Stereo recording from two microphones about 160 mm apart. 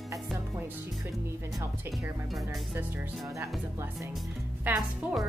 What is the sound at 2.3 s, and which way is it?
Speech, 5° right (ahead or behind).